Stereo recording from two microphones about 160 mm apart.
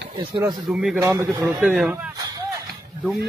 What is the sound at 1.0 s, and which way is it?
Speech, 15° right (ahead or behind).